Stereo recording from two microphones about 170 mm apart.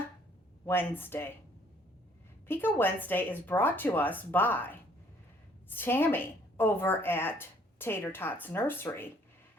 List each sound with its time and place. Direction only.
0.6 s a woman's voice: 10° left (ahead or behind)
2.5 s a woman's voice: 10° left (ahead or behind)